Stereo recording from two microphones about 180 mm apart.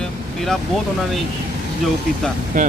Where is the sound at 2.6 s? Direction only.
50° right (ahead or behind).